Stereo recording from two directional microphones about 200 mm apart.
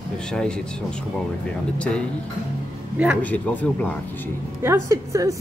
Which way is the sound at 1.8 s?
5° left (ahead or behind).